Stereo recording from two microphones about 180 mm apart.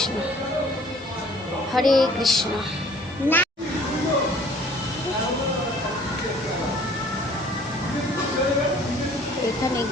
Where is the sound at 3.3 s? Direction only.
10° right (ahead or behind).